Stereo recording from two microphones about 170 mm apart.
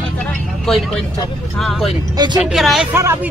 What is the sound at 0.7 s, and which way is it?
Speech, centre (ahead or behind).